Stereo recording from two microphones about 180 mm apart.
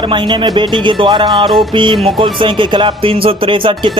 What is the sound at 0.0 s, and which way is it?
Speech, 25° right (ahead or behind).